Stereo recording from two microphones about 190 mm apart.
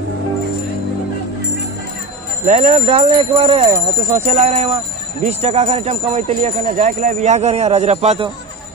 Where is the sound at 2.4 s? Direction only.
40° right (ahead or behind).